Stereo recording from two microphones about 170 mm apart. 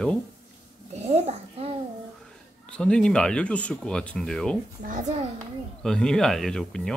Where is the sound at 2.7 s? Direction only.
5° left (ahead or behind).